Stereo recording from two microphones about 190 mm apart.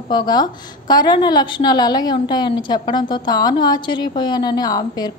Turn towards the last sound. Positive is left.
turn(degrees=20)  # may be behind; listen again after turning